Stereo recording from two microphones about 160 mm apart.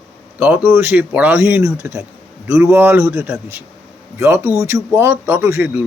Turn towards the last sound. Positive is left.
turn(degrees=-10)  # may be behind; listen again after turning